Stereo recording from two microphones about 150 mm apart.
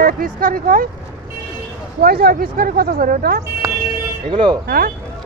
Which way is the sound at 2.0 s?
90° right.